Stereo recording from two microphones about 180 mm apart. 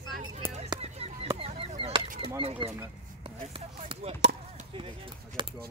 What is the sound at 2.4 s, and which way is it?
Speech, 35° right (ahead or behind).